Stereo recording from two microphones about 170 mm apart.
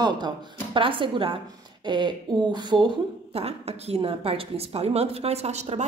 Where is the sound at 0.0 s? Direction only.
25° right (ahead or behind).